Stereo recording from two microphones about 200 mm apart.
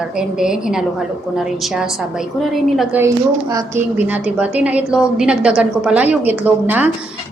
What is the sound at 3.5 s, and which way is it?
A woman's voice, 10° right (ahead or behind).